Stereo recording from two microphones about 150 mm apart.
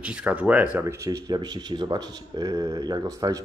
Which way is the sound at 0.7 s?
20° right (ahead or behind).